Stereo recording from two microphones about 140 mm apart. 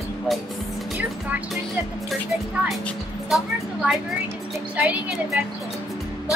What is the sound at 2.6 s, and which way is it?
Speech, centre (ahead or behind).